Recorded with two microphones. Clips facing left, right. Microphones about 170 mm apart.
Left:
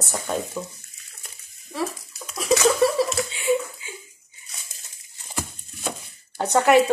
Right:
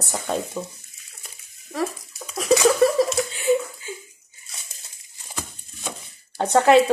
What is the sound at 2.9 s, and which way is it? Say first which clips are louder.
Chuckle: right 2 dB; 45° right (ahead or behind).